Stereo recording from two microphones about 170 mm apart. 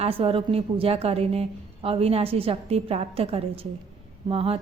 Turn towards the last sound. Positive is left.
turn(degrees=-35)  # may be behind; listen again after turning